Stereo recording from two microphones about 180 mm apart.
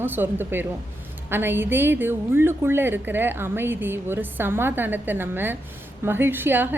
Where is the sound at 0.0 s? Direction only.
10° right (ahead or behind).